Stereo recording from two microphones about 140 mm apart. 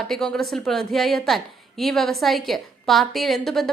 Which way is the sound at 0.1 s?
5° left (ahead or behind).